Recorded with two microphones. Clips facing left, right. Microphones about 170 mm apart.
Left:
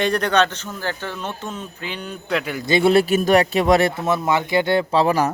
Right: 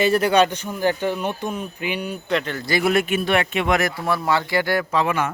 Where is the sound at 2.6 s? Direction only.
25° left (ahead or behind).